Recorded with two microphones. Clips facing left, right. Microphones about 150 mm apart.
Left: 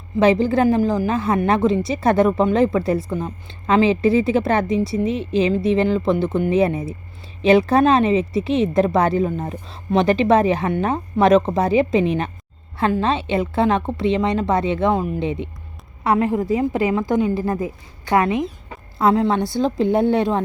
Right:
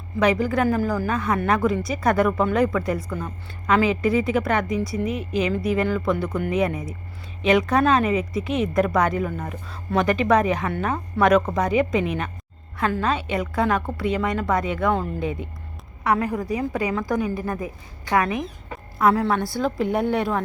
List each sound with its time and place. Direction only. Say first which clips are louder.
0.2 s speech: left 5 dB; 30° left (ahead or behind)